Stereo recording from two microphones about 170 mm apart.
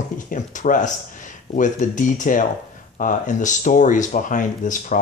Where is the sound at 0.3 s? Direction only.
50° left (ahead or behind).